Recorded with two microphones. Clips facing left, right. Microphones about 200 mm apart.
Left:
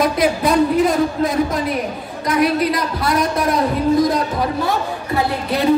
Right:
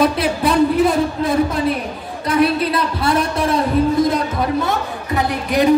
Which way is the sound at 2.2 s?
30° right (ahead or behind).